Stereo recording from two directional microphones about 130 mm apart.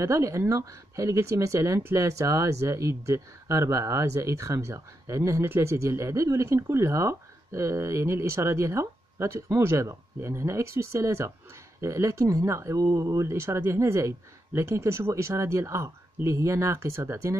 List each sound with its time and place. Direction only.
0.0 s speech: 25° right (ahead or behind)